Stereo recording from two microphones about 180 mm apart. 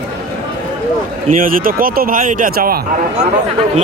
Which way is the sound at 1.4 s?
50° right (ahead or behind).